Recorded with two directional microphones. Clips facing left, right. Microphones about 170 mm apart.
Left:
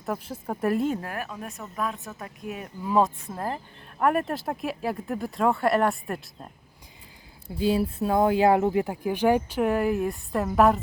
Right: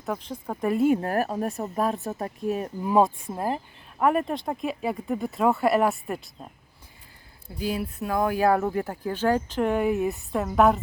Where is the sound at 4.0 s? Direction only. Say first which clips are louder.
Right 1 dB; centre (ahead or behind).